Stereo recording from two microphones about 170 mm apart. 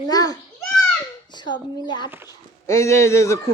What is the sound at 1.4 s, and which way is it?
Speech, 25° left (ahead or behind).